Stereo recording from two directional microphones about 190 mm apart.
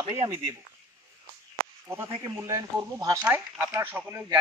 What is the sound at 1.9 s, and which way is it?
Speech, 15° right (ahead or behind).